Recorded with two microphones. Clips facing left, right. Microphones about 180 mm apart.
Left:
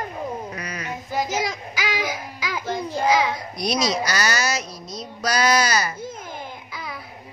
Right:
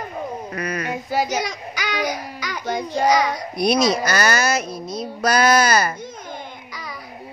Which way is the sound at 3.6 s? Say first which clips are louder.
Right 5 dB; 55° right (ahead or behind).